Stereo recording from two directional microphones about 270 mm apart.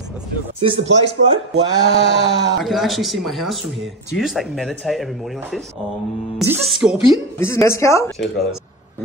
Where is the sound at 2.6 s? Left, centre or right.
Centre.